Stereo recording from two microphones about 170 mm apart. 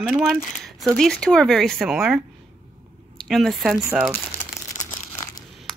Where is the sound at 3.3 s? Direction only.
Centre (ahead or behind).